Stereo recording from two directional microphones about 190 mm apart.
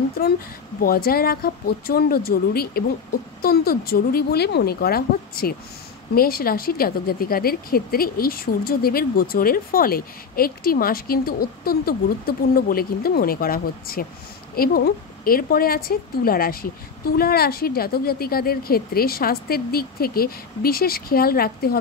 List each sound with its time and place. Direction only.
0.7 s speech: 50° left (ahead or behind)